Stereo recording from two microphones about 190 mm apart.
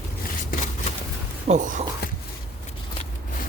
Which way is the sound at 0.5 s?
40° left (ahead or behind).